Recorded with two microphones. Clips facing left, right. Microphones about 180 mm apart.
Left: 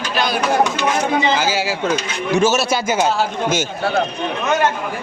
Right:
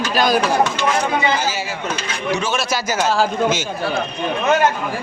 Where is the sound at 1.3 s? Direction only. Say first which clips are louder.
Left 3 dB; 90° left.